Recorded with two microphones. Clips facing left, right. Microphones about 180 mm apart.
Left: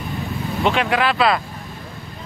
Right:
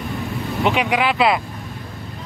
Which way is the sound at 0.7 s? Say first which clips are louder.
Even; 15° right (ahead or behind).